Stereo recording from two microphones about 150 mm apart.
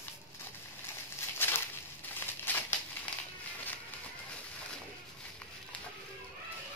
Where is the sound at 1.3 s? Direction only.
15° left (ahead or behind).